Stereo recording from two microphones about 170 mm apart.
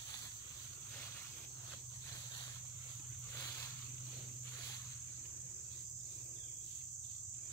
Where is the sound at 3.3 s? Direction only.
15° left (ahead or behind).